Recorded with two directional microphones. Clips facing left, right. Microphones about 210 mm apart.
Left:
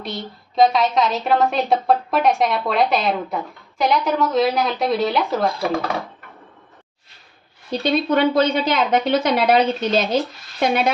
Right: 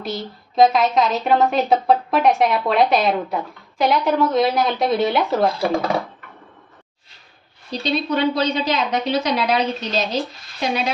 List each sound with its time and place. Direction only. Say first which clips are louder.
0.0 s a woman's voice: right 2 dB; centre (ahead or behind)
7.7 s a woman's voice: left 3 dB; 50° left (ahead or behind)